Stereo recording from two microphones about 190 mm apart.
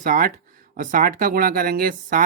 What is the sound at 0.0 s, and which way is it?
Speech, 45° right (ahead or behind).